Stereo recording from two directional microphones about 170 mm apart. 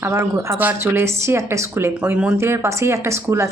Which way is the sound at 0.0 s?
15° right (ahead or behind).